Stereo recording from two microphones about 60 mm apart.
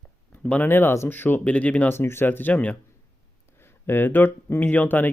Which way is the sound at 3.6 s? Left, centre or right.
Left.